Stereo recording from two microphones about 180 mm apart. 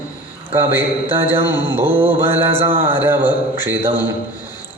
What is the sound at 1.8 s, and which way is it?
Mantra, 10° right (ahead or behind).